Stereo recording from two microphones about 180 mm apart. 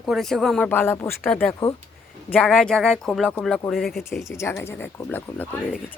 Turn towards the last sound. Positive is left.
turn(degrees=10)  # may be behind; listen again after turning